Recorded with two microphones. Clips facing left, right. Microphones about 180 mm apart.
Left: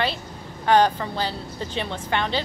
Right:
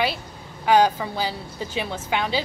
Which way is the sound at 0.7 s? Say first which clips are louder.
Even; 10° right (ahead or behind).